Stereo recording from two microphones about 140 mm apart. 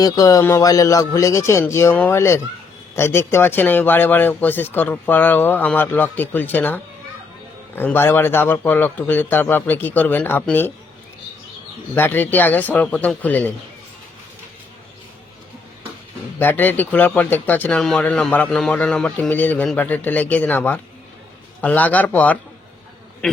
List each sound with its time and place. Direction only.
0.0 s speech: 25° left (ahead or behind)
11.9 s speech: 15° left (ahead or behind)
16.4 s speech: 15° left (ahead or behind)